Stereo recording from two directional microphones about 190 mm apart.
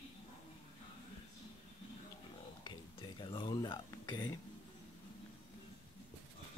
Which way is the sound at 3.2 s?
25° left (ahead or behind).